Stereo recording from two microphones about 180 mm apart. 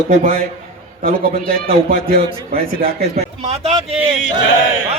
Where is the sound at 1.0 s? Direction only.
50° right (ahead or behind).